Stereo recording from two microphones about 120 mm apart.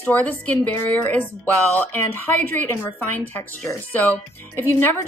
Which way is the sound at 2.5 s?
20° left (ahead or behind).